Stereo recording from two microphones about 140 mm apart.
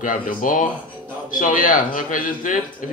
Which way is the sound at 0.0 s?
70° left (ahead or behind).